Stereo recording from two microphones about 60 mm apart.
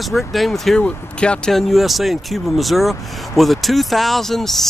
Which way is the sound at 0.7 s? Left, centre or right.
Centre.